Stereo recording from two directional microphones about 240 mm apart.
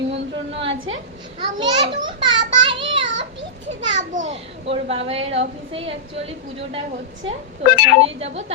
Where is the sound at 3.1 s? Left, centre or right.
Right.